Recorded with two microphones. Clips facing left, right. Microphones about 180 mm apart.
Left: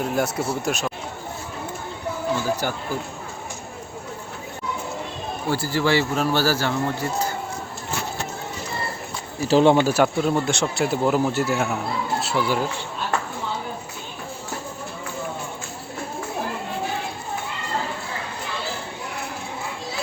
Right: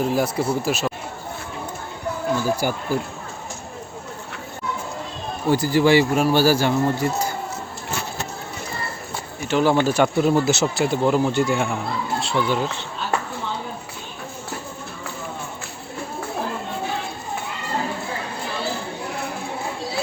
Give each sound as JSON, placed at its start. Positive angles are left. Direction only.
{"t": 0.0, "sound": "speech", "side_deg": 0}
{"t": 2.6, "sound": "a man's voice", "side_deg": -10}
{"t": 5.5, "sound": "a man's voice", "side_deg": -15}
{"t": 9.5, "sound": "speech", "side_deg": 30}
{"t": 9.7, "sound": "speech", "side_deg": 10}
{"t": 10.9, "sound": "speech", "side_deg": 5}